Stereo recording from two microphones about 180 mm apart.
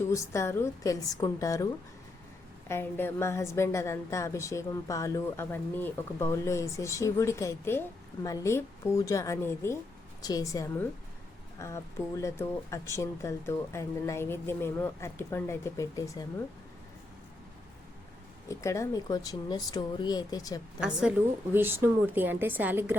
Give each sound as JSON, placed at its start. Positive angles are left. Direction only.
{"t": 0.1, "sound": "a woman's voice", "side_deg": 15}
{"t": 2.6, "sound": "a woman's voice", "side_deg": 15}
{"t": 18.4, "sound": "speech", "side_deg": 15}
{"t": 20.8, "sound": "a woman's voice", "side_deg": -5}